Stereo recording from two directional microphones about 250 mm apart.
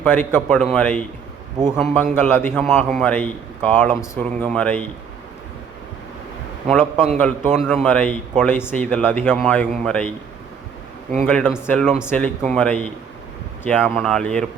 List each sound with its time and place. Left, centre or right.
0.0 s a man's voice: centre
6.7 s a man's voice: centre
11.2 s a man's voice: centre